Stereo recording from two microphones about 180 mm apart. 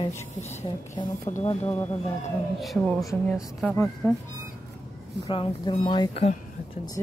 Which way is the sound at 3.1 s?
10° left (ahead or behind).